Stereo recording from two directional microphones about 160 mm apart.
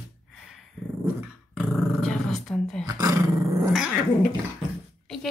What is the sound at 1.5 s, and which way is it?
Dog, centre (ahead or behind).